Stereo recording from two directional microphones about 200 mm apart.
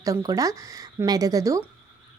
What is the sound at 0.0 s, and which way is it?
Speech, 15° right (ahead or behind).